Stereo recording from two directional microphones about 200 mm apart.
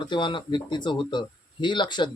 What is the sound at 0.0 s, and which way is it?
Speech, 25° left (ahead or behind).